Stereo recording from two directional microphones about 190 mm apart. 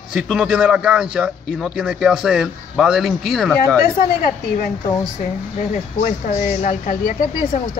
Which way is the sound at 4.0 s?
50° left (ahead or behind).